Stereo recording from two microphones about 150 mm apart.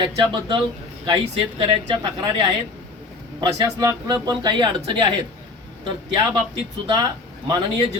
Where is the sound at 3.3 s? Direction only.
25° right (ahead or behind).